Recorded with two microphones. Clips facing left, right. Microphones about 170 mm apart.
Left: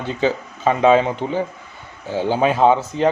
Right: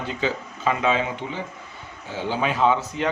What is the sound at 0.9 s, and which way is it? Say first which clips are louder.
Speech: left 9 dB; 45° left (ahead or behind).